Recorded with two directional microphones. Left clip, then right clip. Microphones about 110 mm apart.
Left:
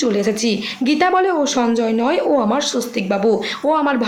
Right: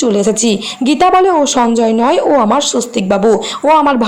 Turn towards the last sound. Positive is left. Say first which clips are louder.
# right 7 dB
turn(degrees=-45)  # may be behind; listen again after turning